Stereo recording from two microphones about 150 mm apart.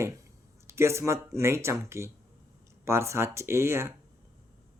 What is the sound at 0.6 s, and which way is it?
Speech, 20° right (ahead or behind).